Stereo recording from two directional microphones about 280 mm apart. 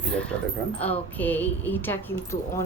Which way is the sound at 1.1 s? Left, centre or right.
Centre.